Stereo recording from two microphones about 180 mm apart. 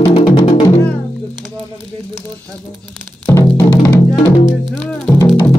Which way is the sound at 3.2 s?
15° left (ahead or behind).